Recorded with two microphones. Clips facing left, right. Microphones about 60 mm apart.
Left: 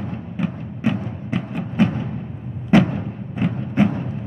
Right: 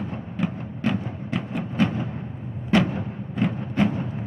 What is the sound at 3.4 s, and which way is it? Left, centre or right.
Music, centre.